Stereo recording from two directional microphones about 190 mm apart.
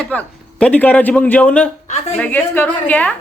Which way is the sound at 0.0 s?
5° left (ahead or behind).